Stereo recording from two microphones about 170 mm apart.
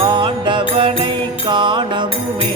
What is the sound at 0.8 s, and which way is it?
Mantra, 30° right (ahead or behind).